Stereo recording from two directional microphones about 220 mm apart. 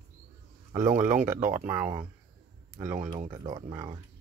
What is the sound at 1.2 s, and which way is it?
Speech, 10° right (ahead or behind).